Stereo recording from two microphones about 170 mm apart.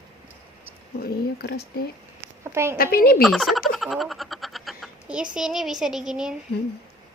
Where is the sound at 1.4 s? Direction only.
70° left (ahead or behind).